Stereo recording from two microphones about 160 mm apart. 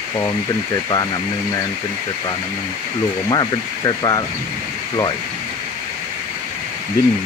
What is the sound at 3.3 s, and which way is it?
Speech, 25° left (ahead or behind).